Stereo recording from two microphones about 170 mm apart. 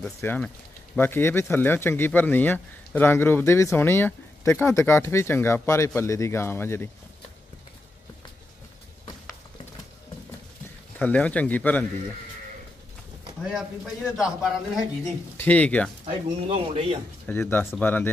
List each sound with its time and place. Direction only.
0.0 s speech: 10° left (ahead or behind)
11.0 s speech: 10° left (ahead or behind)
14.1 s a man's voice: 5° right (ahead or behind)
15.3 s speech: 10° left (ahead or behind)
16.1 s speech: 35° right (ahead or behind)
17.3 s speech: 10° left (ahead or behind)